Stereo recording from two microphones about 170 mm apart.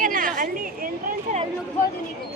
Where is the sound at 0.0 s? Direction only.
50° right (ahead or behind).